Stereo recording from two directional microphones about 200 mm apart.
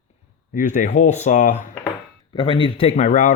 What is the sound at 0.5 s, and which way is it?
Speech, 40° left (ahead or behind).